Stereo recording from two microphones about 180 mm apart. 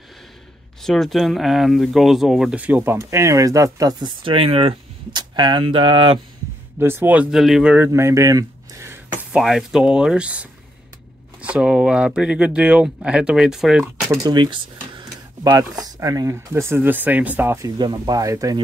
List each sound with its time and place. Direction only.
0.8 s speech: centre (ahead or behind); by 6.1 s 30° right (ahead or behind)
6.8 s speech: 10° right (ahead or behind)
14.1 s speech: 25° right (ahead or behind)